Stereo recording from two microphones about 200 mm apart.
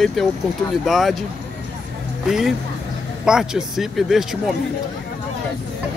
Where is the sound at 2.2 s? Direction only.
Centre (ahead or behind).